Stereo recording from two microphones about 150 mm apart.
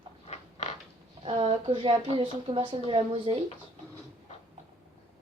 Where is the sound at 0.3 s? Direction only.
45° left (ahead or behind).